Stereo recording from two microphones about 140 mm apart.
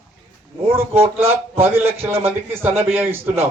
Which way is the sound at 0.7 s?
15° right (ahead or behind).